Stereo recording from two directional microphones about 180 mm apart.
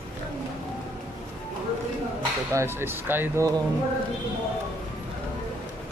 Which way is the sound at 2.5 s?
10° right (ahead or behind).